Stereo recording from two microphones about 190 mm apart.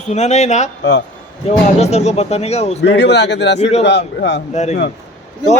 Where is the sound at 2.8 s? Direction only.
65° left (ahead or behind).